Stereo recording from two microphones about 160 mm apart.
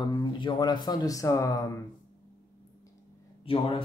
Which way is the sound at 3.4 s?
35° left (ahead or behind).